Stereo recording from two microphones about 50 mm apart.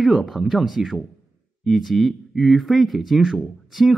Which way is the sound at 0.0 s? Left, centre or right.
Centre.